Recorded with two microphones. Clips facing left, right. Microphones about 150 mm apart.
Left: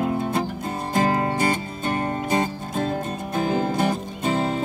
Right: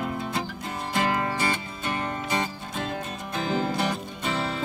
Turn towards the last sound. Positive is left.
turn(degrees=45)  # may be behind; listen again after turning